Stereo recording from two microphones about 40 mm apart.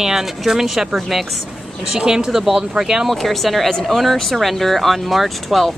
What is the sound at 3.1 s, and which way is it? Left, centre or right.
Speech, centre.